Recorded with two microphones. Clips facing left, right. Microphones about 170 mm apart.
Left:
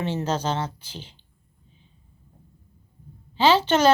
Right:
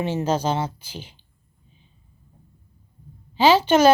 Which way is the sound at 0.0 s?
10° right (ahead or behind).